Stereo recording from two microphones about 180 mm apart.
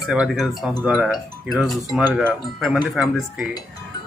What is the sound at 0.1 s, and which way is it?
Speech, centre (ahead or behind).